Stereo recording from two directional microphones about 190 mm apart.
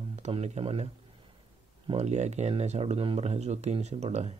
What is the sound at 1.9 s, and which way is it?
Speech, 35° right (ahead or behind).